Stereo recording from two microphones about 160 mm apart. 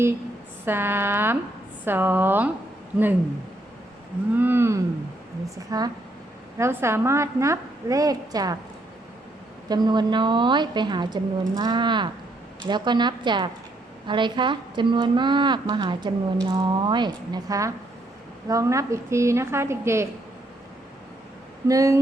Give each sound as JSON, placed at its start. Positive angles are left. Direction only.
{"t": 0.6, "sound": "a woman's voice", "side_deg": -15}
{"t": 4.4, "sound": "a woman's voice", "side_deg": -15}
{"t": 9.6, "sound": "a woman's voice", "side_deg": -25}
{"t": 21.7, "sound": "a woman's voice", "side_deg": -20}